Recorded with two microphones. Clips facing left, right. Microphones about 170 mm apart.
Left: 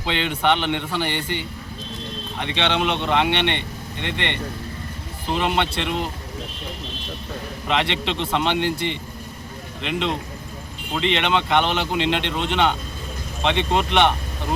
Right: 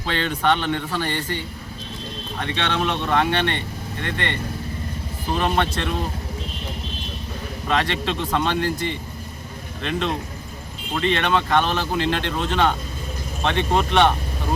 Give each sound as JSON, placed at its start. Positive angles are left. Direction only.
{"t": 0.0, "sound": "speech", "side_deg": 20}
{"t": 7.7, "sound": "speech", "side_deg": 20}
{"t": 11.0, "sound": "speech", "side_deg": 20}